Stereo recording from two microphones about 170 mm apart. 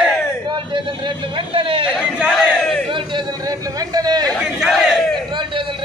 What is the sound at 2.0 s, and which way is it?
Battle cry, 5° right (ahead or behind).